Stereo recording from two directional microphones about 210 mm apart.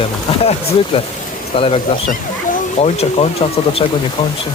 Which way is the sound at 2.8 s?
30° left (ahead or behind).